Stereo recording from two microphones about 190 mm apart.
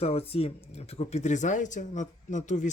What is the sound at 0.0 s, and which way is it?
Speech, 30° left (ahead or behind).